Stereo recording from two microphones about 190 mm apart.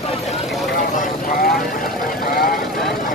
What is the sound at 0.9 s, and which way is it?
Vehicle, 45° left (ahead or behind).